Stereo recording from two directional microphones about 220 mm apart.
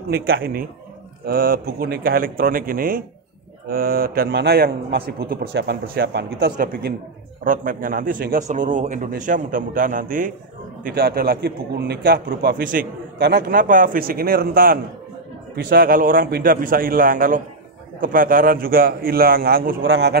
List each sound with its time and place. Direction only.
0.1 s a man's voice: 45° right (ahead or behind)
19.8 s a man's voice: 55° right (ahead or behind)